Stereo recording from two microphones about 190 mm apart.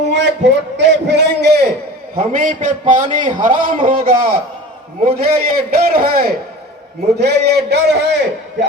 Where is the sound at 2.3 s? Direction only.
45° right (ahead or behind).